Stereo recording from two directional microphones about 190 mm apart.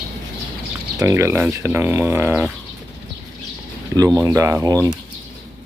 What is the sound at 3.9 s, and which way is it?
Speech, 20° right (ahead or behind).